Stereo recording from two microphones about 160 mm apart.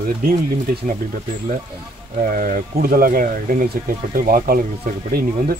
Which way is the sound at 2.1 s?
60° right (ahead or behind).